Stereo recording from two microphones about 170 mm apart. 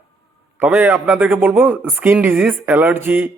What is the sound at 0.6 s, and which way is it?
Speech, 10° right (ahead or behind).